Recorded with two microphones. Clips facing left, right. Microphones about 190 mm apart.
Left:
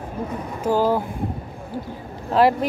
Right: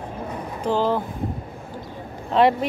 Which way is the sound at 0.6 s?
10° left (ahead or behind).